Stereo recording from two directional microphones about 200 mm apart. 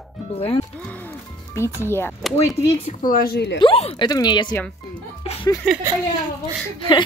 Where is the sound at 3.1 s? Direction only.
45° left (ahead or behind).